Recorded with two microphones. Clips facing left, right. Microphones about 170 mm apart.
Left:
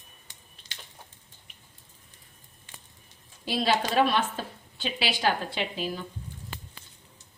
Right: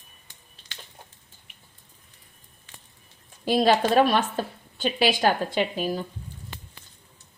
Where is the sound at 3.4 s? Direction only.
45° right (ahead or behind).